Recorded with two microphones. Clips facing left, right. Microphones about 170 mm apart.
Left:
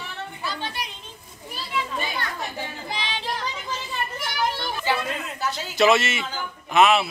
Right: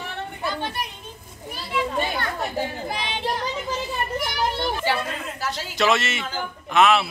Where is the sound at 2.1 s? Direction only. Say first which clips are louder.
Right 5 dB; 50° right (ahead or behind).